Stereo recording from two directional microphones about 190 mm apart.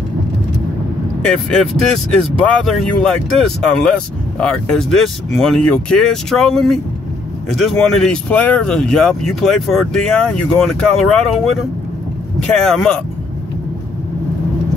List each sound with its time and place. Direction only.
1.3 s speech: 5° left (ahead or behind)
12.5 s speech: 5° left (ahead or behind)